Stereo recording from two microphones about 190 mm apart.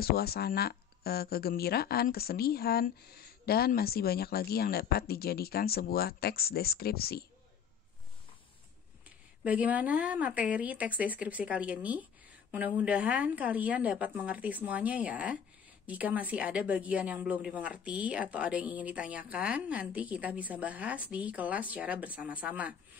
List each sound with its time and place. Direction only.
0.0 s speech: 55° left (ahead or behind)
9.4 s a woman's voice: 10° right (ahead or behind)